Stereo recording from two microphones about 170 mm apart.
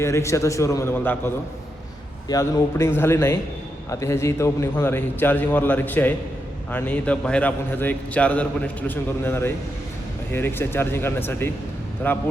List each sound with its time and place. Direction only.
0.0 s a man's voice: 15° left (ahead or behind)
2.3 s a man's voice: 20° left (ahead or behind)